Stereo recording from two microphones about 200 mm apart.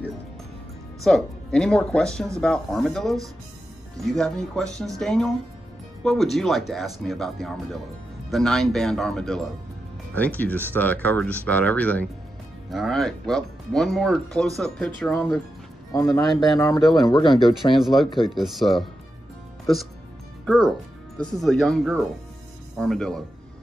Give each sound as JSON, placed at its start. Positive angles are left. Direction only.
{"t": 1.0, "sound": "speech", "side_deg": 5}
{"t": 16.5, "sound": "speech", "side_deg": 15}
{"t": 17.7, "sound": "speech", "side_deg": 0}
{"t": 20.4, "sound": "speech", "side_deg": 5}